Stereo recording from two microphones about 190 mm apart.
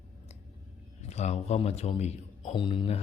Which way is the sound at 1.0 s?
35° left (ahead or behind).